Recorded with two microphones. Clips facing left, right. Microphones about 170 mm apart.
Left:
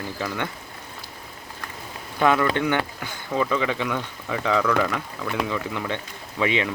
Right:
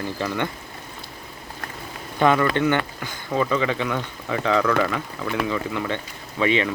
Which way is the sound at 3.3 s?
15° right (ahead or behind).